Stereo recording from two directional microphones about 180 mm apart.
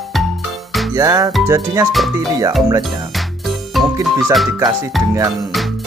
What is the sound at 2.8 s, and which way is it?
Music, centre (ahead or behind).